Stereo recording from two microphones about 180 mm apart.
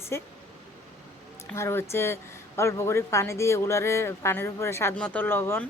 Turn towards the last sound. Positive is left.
turn(degrees=10)  # may be behind; listen again after turning